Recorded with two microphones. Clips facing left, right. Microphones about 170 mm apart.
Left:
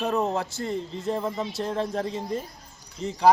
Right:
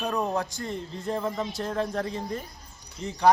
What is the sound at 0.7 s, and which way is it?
A man's voice, centre (ahead or behind).